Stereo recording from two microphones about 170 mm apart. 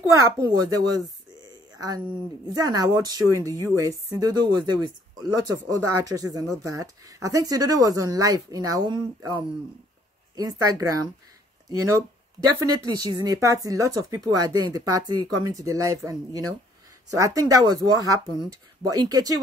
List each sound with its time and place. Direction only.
0.1 s speech: 20° right (ahead or behind)
2.5 s speech: 20° right (ahead or behind)
12.6 s speech: 20° right (ahead or behind)